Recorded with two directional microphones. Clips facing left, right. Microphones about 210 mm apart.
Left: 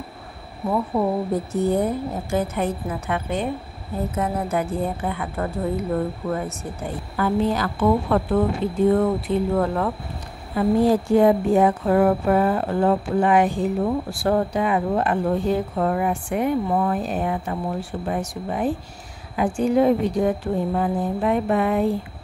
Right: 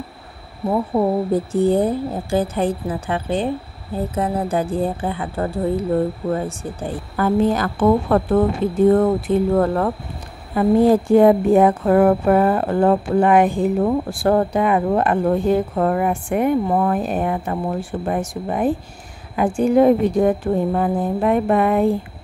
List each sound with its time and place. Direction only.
0.7 s speech: 30° right (ahead or behind)
7.2 s a woman's voice: 45° right (ahead or behind)